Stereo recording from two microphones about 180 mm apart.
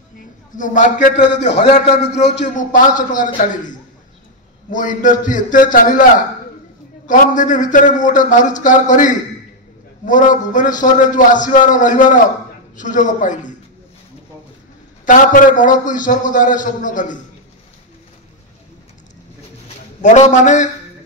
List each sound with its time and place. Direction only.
0.6 s a man's voice: 45° left (ahead or behind)
4.6 s a man's voice: 45° left (ahead or behind)
7.1 s a man's voice: 45° left (ahead or behind)
15.0 s a man's voice: 45° left (ahead or behind)
20.0 s a man's voice: 40° left (ahead or behind)